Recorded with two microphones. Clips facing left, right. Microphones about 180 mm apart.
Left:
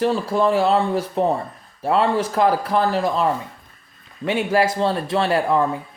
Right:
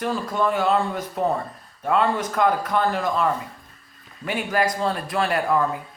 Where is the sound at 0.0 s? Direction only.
30° left (ahead or behind).